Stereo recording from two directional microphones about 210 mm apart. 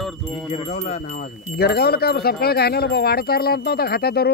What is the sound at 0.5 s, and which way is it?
Wind chime, 30° left (ahead or behind).